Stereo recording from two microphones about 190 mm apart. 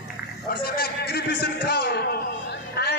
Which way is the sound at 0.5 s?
55° left (ahead or behind).